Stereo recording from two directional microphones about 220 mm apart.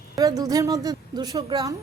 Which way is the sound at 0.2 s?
15° right (ahead or behind).